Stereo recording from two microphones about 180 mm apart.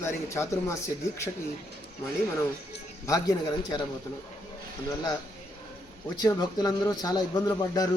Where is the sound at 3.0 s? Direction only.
20° left (ahead or behind).